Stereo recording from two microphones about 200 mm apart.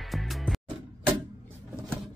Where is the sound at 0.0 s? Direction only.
Centre (ahead or behind).